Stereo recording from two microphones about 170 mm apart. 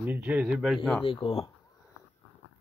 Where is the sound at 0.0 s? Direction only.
10° right (ahead or behind).